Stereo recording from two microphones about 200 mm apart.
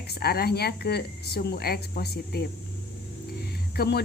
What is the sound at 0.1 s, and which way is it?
Speech, 50° left (ahead or behind).